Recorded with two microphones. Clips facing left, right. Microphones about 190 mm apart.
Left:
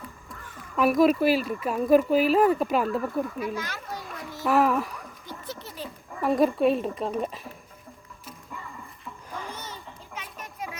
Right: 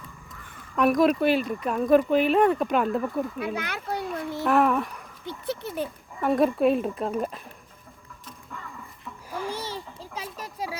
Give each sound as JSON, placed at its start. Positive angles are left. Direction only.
{"t": 0.8, "sound": "speech", "side_deg": 5}
{"t": 3.4, "sound": "a child's voice", "side_deg": -60}
{"t": 4.4, "sound": "speech", "side_deg": 0}
{"t": 5.2, "sound": "a sound", "side_deg": -60}
{"t": 6.2, "sound": "speech", "side_deg": 0}
{"t": 9.5, "sound": "children playing", "side_deg": -30}